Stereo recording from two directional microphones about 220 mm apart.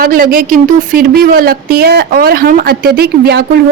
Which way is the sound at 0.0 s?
40° right (ahead or behind).